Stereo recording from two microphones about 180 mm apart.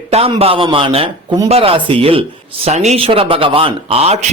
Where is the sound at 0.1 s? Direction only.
35° right (ahead or behind).